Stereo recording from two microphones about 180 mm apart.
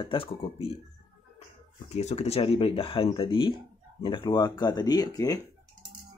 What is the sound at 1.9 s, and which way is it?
Speech, 35° left (ahead or behind).